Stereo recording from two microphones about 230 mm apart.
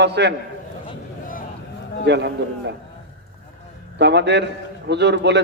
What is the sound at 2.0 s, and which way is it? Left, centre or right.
Speech, right.